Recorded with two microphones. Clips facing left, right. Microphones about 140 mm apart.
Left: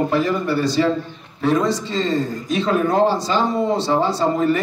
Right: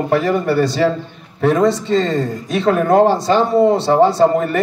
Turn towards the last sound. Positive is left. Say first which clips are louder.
# right 4 dB
turn(degrees=-55)  # may be behind; listen again after turning